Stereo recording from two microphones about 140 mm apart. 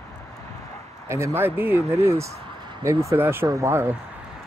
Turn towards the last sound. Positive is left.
turn(degrees=-20)  # may be behind; listen again after turning